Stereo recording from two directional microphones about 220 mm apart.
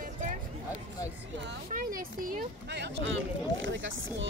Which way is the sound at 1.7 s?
40° right (ahead or behind).